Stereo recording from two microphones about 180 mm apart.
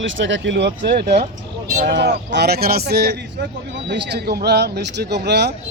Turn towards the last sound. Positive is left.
turn(degrees=-65)  # may be behind; listen again after turning